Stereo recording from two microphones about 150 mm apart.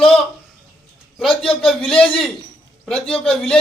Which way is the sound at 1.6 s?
5° left (ahead or behind).